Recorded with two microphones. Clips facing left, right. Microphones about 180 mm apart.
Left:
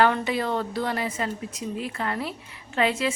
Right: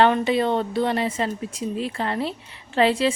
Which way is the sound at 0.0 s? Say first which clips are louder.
Right 4 dB; 25° right (ahead or behind).